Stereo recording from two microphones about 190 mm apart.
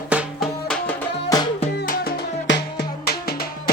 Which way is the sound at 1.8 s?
45° left (ahead or behind).